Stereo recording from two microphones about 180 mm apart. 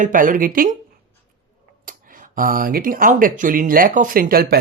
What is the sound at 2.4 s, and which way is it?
Speech, 50° right (ahead or behind).